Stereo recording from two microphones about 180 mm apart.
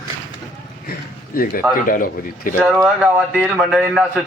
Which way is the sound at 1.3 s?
55° left (ahead or behind).